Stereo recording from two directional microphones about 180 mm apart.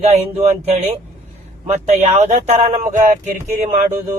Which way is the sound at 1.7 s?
40° right (ahead or behind).